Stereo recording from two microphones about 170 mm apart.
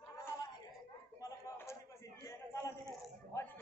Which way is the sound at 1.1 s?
20° left (ahead or behind).